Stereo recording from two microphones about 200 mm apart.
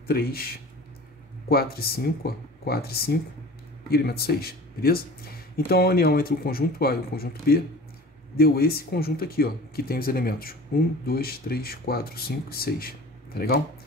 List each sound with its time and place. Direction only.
0.0 s speech: 50° left (ahead or behind)